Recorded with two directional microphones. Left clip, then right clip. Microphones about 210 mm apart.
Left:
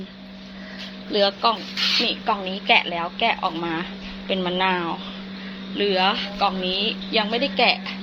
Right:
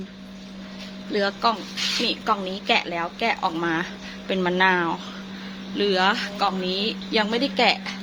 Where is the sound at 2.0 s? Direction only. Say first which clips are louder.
Even; 15° right (ahead or behind).